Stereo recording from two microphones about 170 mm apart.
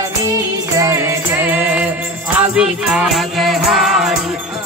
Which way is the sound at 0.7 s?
20° right (ahead or behind).